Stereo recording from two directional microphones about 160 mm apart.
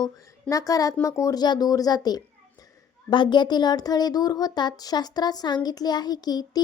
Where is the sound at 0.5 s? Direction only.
20° left (ahead or behind).